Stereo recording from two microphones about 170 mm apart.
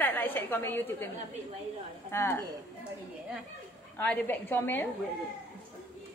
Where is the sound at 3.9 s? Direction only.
10° left (ahead or behind).